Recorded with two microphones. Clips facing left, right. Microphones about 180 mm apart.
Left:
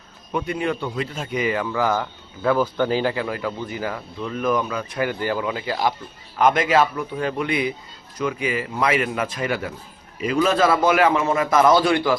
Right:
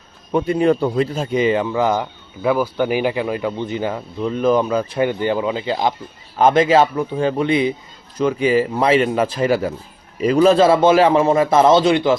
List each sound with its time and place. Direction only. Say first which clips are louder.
0.3 s a man's voice: right 8 dB; 30° right (ahead or behind)